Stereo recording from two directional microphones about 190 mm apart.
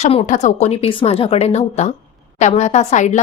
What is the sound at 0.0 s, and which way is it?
A woman's voice, 35° left (ahead or behind).